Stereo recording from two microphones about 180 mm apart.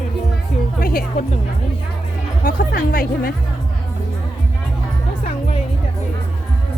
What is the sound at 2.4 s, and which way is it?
Speech, 60° left (ahead or behind).